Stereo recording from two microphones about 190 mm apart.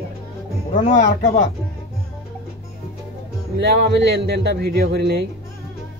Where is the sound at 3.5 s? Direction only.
60° right (ahead or behind).